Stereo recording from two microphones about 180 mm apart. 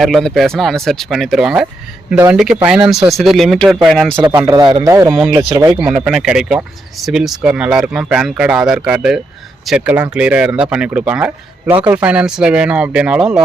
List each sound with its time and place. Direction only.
0.0 s speech: centre (ahead or behind)
4.2 s speech: 20° right (ahead or behind)
5.0 s speech: 5° right (ahead or behind)